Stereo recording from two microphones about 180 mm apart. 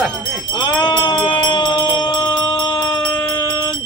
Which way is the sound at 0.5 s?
25° left (ahead or behind).